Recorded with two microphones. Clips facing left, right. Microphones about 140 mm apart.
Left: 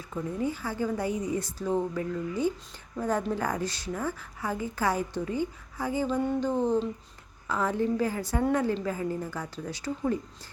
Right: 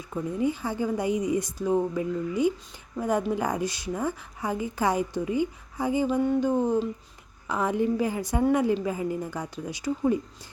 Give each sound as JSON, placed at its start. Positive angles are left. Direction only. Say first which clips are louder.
{"t": 0.1, "sound": "a woman's voice", "louder": "right 4 dB", "side_deg": -15}